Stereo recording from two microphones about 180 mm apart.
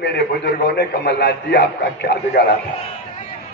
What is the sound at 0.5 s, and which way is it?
A man's voice, 60° left (ahead or behind).